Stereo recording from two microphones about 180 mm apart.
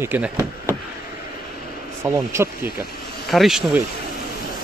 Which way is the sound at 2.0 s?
15° right (ahead or behind).